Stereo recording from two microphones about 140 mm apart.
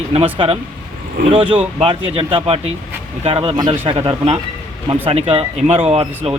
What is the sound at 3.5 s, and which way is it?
Speech, 30° right (ahead or behind).